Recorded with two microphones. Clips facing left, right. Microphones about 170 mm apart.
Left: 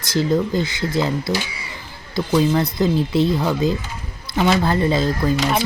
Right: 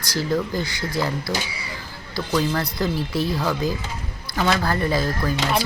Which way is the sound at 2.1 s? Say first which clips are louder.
Left 5 dB; 20° left (ahead or behind).